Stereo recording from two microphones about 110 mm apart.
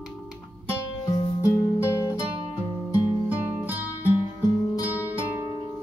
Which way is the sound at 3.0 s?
15° right (ahead or behind).